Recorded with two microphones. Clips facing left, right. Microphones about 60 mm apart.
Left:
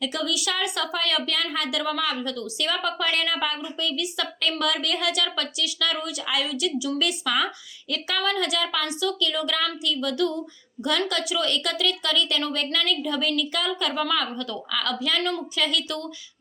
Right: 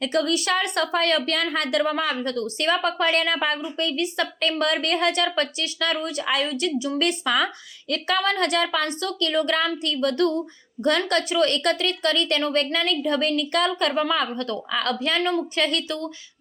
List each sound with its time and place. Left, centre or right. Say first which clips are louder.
0.0 s a woman's voice: right 5 dB; right
13.9 s a woman's voice: right 3 dB; right
15.2 s a woman's voice: right 4 dB; right
15.5 s a woman's voice: right 2 dB; right